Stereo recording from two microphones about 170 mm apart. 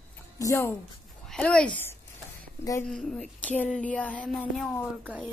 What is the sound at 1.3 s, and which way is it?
Speech, 5° left (ahead or behind).